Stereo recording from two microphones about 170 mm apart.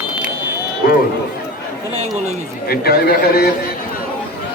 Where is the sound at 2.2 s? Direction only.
65° left (ahead or behind).